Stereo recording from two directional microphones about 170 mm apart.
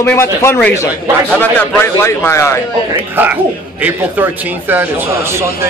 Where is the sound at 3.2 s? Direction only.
10° right (ahead or behind).